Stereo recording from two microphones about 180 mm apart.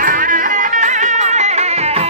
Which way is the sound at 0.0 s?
50° right (ahead or behind).